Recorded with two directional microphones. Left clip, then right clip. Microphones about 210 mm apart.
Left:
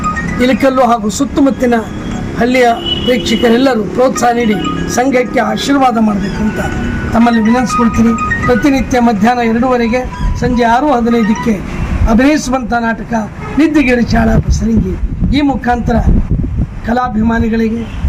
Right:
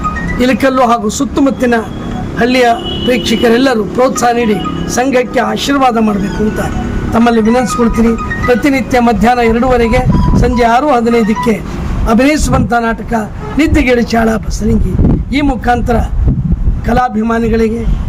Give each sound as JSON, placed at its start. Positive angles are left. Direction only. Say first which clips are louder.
{"t": 0.4, "sound": "a man's voice", "louder": "even", "side_deg": 0}
{"t": 7.1, "sound": "a man's voice", "louder": "right 1 dB", "side_deg": -5}
{"t": 15.4, "sound": "a man's voice", "louder": "even", "side_deg": -5}